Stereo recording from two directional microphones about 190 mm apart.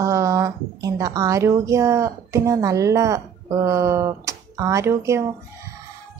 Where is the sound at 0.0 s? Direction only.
15° right (ahead or behind).